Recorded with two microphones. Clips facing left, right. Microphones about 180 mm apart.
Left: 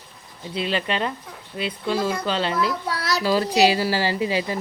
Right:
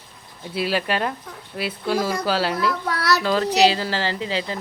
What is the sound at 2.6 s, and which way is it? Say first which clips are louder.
Speech: right 1 dB; 50° right (ahead or behind).